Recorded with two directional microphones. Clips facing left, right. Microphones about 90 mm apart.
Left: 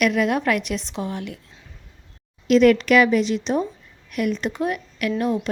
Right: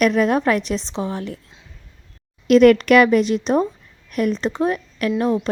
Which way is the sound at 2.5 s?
50° right (ahead or behind).